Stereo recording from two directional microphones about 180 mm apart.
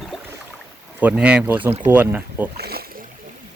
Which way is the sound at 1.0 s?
5° right (ahead or behind).